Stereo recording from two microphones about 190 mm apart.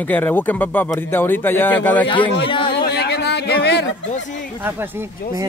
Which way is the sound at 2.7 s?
60° left (ahead or behind).